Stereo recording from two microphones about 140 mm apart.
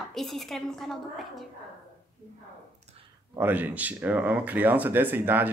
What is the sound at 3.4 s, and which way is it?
Speech, 10° right (ahead or behind).